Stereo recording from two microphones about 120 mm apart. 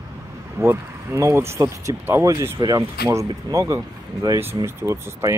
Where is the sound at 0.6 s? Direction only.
25° right (ahead or behind).